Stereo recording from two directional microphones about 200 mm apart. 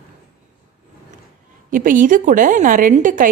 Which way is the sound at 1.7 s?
40° right (ahead or behind).